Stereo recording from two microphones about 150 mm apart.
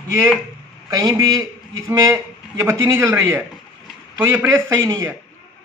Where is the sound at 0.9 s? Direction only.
25° right (ahead or behind).